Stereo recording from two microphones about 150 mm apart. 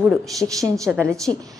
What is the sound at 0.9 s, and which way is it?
Speech, 20° right (ahead or behind).